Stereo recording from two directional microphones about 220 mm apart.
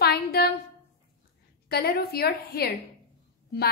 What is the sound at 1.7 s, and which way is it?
A woman's voice, 45° left (ahead or behind).